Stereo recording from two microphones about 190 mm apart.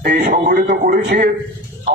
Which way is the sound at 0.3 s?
50° right (ahead or behind).